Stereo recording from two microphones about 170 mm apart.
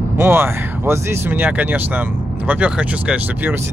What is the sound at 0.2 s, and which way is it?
Speech, 15° right (ahead or behind).